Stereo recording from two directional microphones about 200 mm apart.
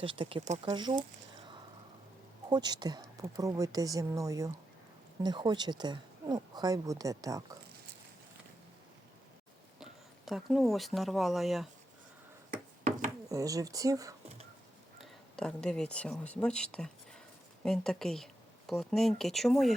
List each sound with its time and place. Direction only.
0.0 s speech: 25° right (ahead or behind)
2.5 s speech: 20° right (ahead or behind)
9.8 s speech: centre (ahead or behind)
13.2 s speech: 15° right (ahead or behind)
14.9 s speech: centre (ahead or behind)